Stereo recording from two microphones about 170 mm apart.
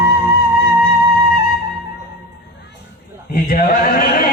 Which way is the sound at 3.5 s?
60° left (ahead or behind).